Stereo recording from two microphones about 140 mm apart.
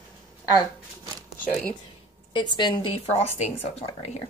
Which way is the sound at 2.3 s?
35° left (ahead or behind).